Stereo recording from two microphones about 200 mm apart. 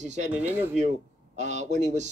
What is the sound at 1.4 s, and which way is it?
Speech, 35° right (ahead or behind).